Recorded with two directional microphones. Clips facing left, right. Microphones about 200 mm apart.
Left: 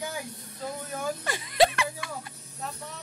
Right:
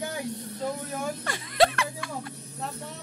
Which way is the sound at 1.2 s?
5° left (ahead or behind).